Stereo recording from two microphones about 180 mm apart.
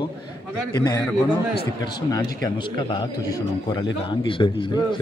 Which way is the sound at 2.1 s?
20° left (ahead or behind).